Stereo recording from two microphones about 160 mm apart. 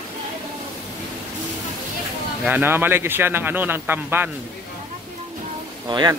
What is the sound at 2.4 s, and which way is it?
Speech, 10° right (ahead or behind).